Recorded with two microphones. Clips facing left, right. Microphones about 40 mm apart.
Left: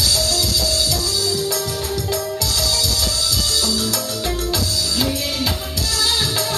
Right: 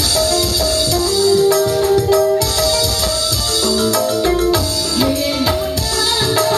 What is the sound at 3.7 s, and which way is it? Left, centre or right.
Music, right.